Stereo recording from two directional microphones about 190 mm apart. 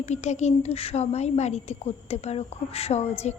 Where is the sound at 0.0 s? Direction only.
35° left (ahead or behind).